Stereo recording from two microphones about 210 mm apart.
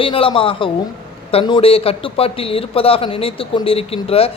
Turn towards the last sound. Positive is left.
turn(degrees=30)  # may be behind; listen again after turning